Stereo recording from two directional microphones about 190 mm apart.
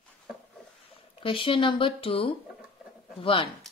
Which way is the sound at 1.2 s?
30° left (ahead or behind).